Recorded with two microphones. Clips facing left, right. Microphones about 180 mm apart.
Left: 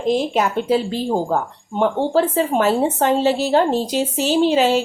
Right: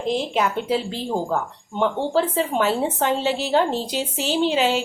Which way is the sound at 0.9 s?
45° left (ahead or behind).